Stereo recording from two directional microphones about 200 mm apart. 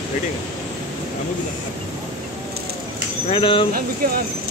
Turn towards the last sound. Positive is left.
turn(degrees=-45)  # may be behind; listen again after turning